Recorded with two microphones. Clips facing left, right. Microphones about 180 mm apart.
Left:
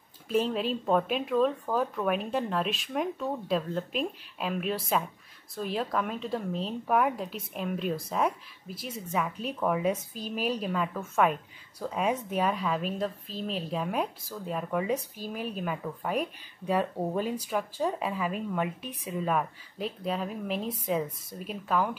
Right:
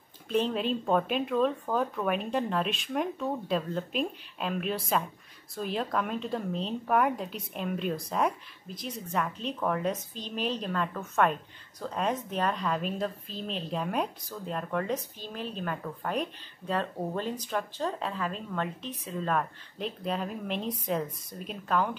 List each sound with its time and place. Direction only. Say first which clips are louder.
0.3 s a woman's voice: even; 5° left (ahead or behind)